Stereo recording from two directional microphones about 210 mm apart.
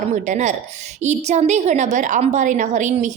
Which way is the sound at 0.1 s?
35° right (ahead or behind).